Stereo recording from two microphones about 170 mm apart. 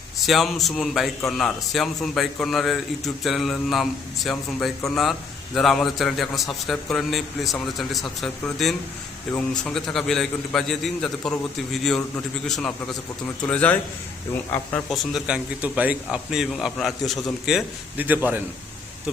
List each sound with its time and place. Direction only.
0.3 s a man's voice: centre (ahead or behind)